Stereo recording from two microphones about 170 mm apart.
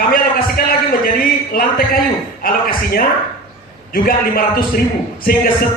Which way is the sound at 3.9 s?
60° left (ahead or behind).